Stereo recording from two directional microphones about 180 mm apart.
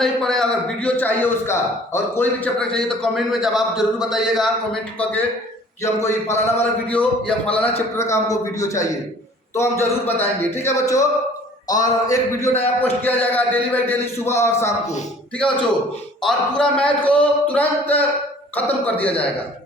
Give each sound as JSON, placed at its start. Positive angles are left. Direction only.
{"t": 0.0, "sound": "a man's voice", "side_deg": 0}
{"t": 6.0, "sound": "speech", "side_deg": 40}
{"t": 6.9, "sound": "speech", "side_deg": 5}
{"t": 7.9, "sound": "a man's voice", "side_deg": 15}